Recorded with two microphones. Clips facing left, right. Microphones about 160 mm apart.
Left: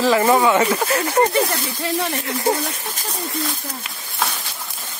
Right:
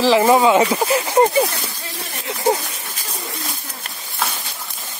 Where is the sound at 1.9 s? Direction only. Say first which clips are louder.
Left 11 dB; 90° left.